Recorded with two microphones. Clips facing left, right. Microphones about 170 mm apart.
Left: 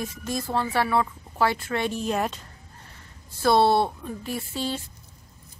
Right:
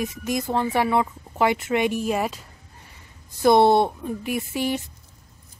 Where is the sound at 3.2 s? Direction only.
15° right (ahead or behind).